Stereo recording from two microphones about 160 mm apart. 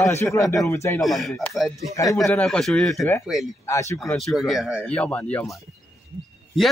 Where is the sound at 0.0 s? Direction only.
15° left (ahead or behind).